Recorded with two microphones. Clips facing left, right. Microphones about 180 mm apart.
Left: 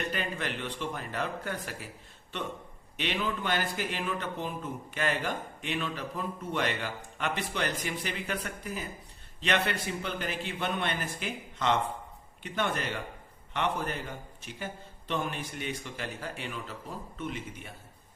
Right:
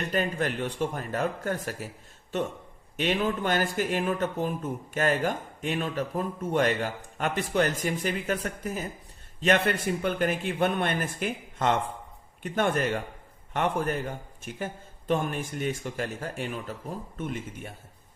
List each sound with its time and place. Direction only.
0.1 s a man's voice: 45° right (ahead or behind)
3.0 s a man's voice: 45° right (ahead or behind)